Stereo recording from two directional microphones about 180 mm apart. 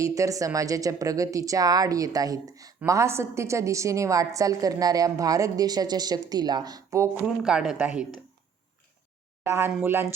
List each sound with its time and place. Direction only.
0.0 s speech: 20° right (ahead or behind)
7.4 s speech: 5° right (ahead or behind)
9.4 s speech: 15° right (ahead or behind)